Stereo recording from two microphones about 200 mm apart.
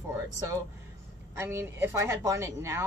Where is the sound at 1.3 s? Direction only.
10° right (ahead or behind).